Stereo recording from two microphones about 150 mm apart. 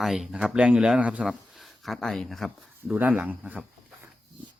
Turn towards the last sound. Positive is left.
turn(degrees=-10)  # may be behind; listen again after turning